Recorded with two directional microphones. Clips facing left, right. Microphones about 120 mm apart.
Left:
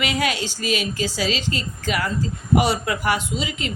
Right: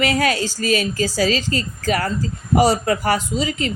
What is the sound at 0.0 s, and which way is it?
A woman's voice, 40° right (ahead or behind).